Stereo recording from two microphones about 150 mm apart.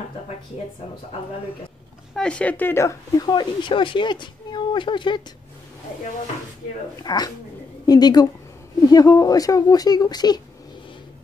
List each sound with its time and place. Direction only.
2.1 s speech: 5° left (ahead or behind); by 5.2 s 30° left (ahead or behind)
7.0 s a woman's voice: 25° left (ahead or behind)